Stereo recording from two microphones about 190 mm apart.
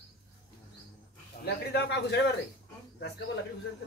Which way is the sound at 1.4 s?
65° left (ahead or behind).